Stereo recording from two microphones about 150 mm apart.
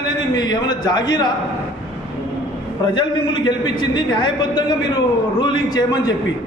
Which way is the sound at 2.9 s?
30° left (ahead or behind).